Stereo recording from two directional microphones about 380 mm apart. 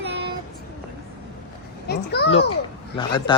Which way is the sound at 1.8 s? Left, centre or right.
Left.